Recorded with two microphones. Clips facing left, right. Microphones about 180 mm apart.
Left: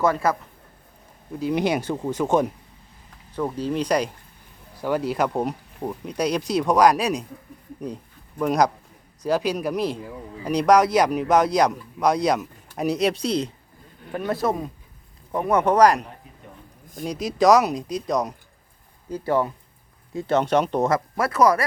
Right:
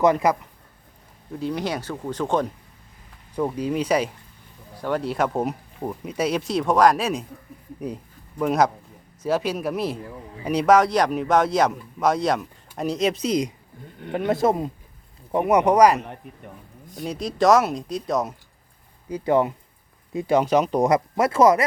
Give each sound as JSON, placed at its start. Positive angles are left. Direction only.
{"t": 0.0, "sound": "speech", "side_deg": -15}
{"t": 1.3, "sound": "speech", "side_deg": 0}
{"t": 1.5, "sound": "speech", "side_deg": 15}
{"t": 2.0, "sound": "speech", "side_deg": 10}
{"t": 3.3, "sound": "speech", "side_deg": -10}
{"t": 8.4, "sound": "speech", "side_deg": 0}
{"t": 13.1, "sound": "speech", "side_deg": -10}
{"t": 14.1, "sound": "speech", "side_deg": -25}
{"t": 19.0, "sound": "speech", "side_deg": -15}
{"t": 20.8, "sound": "speech", "side_deg": -20}